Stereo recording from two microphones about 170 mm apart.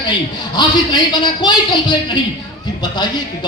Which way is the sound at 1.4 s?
25° left (ahead or behind).